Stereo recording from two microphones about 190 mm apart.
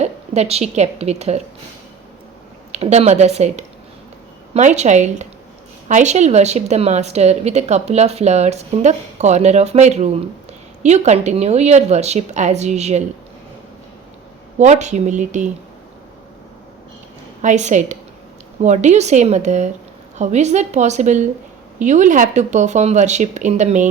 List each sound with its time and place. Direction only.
0.0 s a woman's voice: 35° right (ahead or behind)
2.7 s speech: 35° right (ahead or behind)
14.6 s speech: 40° right (ahead or behind)
17.4 s speech: 40° right (ahead or behind)